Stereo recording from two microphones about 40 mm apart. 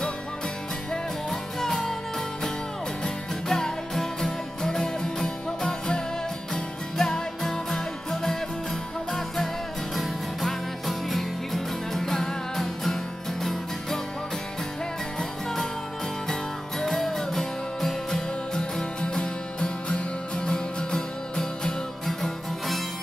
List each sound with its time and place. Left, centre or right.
1.6 s music: centre
3.4 s music: centre
9.9 s music: centre
16.8 s music: centre
18.9 s music: left